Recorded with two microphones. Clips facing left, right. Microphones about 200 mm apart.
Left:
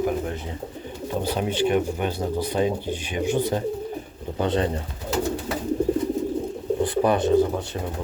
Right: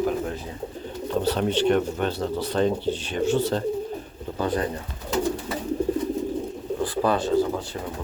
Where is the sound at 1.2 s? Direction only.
10° left (ahead or behind).